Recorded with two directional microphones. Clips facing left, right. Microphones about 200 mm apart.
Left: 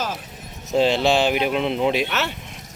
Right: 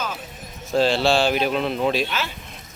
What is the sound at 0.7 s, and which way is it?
Speech, 20° left (ahead or behind).